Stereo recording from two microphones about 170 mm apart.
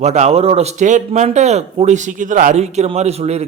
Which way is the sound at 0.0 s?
40° right (ahead or behind).